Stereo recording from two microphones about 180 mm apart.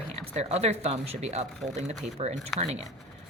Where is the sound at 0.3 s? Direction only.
35° right (ahead or behind).